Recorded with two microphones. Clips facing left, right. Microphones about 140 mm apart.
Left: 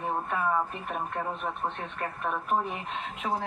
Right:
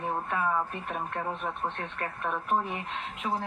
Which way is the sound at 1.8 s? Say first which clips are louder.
Left 1 dB; 10° left (ahead or behind).